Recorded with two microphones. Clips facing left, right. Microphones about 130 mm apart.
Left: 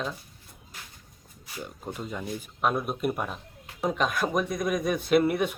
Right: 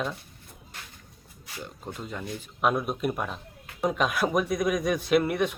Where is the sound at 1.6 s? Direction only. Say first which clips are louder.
Left 2 dB; 10° left (ahead or behind).